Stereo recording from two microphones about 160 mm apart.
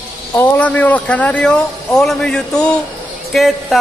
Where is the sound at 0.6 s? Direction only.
10° left (ahead or behind).